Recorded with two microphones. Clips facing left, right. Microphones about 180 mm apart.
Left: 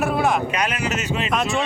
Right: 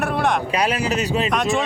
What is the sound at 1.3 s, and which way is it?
Speech, centre (ahead or behind).